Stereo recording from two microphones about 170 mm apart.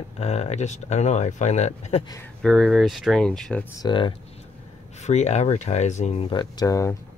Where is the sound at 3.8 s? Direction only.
30° left (ahead or behind).